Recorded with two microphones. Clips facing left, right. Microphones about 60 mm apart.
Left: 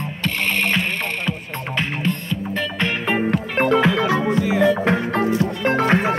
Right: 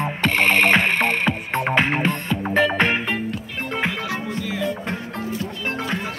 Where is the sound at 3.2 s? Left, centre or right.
Left.